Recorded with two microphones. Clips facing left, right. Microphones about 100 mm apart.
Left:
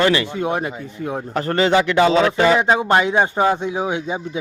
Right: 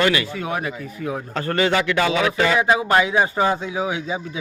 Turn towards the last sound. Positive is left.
turn(degrees=25)  # may be behind; listen again after turning